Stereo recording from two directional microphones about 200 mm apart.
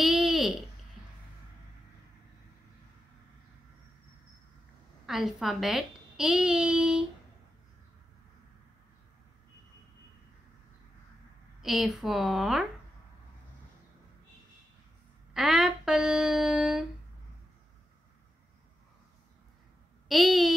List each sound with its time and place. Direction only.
0.0 s a sound: centre (ahead or behind)
5.0 s a child's voice: centre (ahead or behind)
11.6 s a child's voice: centre (ahead or behind)
15.3 s a child's voice: centre (ahead or behind)
20.1 s a child's voice: centre (ahead or behind)